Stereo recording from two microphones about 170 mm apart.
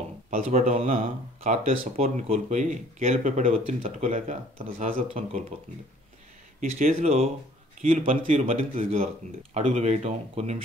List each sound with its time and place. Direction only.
0.4 s speech: 40° right (ahead or behind)
6.6 s speech: 55° right (ahead or behind)
7.0 s speech: 35° right (ahead or behind)